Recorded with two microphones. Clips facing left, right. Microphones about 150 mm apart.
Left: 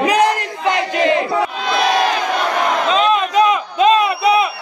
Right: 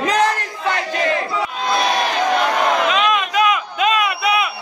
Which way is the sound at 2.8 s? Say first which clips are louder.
Left 3 dB; 30° left (ahead or behind).